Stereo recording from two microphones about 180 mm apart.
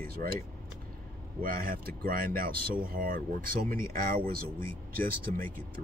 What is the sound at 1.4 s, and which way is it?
Speech, 55° right (ahead or behind).